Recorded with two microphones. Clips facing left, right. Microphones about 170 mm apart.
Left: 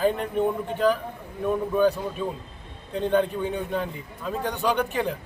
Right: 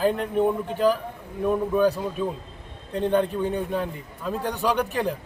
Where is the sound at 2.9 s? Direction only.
Centre (ahead or behind).